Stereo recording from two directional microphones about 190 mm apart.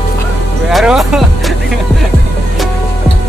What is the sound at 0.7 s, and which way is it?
Speech, centre (ahead or behind).